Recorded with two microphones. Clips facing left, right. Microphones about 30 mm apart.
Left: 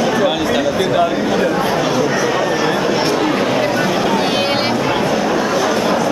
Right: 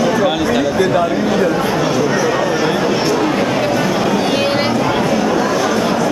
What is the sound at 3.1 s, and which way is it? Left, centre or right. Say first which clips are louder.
Vehicle: even; centre.